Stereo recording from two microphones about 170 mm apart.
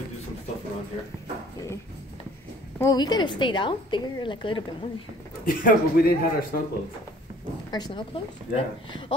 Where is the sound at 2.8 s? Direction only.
20° left (ahead or behind).